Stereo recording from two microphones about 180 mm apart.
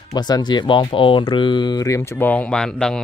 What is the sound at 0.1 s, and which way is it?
Speech, 25° left (ahead or behind).